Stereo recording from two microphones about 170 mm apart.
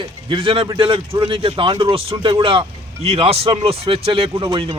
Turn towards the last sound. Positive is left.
turn(degrees=-30)  # may be behind; listen again after turning